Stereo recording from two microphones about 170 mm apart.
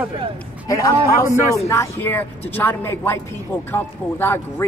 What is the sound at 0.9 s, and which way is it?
Speech, 15° right (ahead or behind).